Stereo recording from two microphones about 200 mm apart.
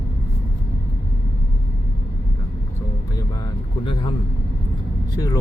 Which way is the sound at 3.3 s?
20° left (ahead or behind).